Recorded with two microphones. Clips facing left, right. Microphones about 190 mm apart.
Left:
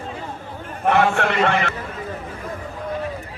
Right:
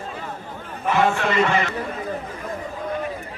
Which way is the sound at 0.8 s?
60° left (ahead or behind).